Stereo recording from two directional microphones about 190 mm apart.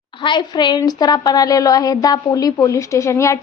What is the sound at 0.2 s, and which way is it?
A woman's voice, 25° left (ahead or behind).